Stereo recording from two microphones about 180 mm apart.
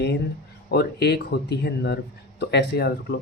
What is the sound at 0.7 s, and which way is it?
Speech, 65° left (ahead or behind).